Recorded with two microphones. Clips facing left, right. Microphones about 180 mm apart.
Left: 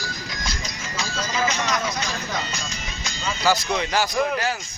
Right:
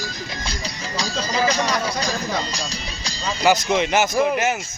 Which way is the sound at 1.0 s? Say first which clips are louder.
Right 3 dB; 35° right (ahead or behind).